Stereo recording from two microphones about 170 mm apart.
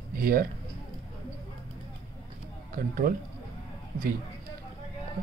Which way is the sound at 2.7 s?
60° right (ahead or behind).